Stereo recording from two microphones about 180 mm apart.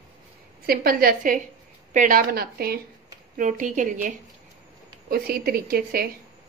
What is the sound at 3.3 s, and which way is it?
Speech, 45° right (ahead or behind).